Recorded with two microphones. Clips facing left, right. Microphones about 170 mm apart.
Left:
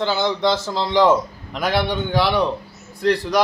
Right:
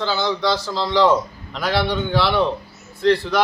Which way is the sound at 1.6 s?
50° left (ahead or behind).